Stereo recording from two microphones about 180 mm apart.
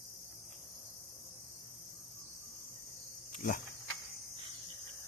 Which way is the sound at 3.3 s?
50° left (ahead or behind).